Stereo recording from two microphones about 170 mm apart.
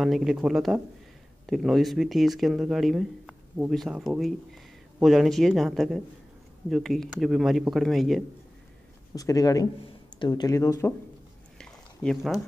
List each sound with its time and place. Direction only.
0.0 s speech: centre (ahead or behind)
9.1 s speech: 20° left (ahead or behind)
11.5 s a sound: 5° left (ahead or behind)